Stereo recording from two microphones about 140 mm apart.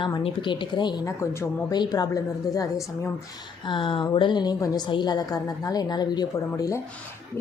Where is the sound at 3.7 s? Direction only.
35° left (ahead or behind).